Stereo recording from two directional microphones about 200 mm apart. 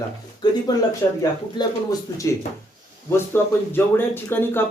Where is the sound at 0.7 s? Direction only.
20° left (ahead or behind).